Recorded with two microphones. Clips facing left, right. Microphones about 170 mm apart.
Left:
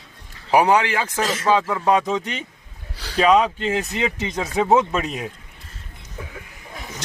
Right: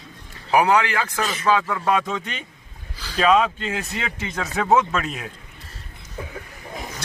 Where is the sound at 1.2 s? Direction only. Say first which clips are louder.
Left 3 dB; 90° left.